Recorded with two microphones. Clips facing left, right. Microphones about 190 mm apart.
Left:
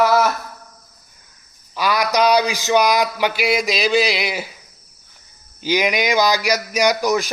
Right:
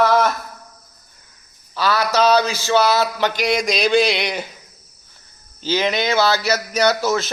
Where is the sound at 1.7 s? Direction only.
15° left (ahead or behind).